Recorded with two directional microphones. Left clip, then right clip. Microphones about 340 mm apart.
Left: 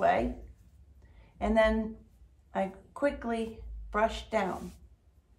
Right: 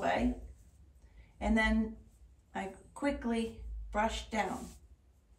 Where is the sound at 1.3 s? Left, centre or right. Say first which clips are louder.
Left 6 dB; centre.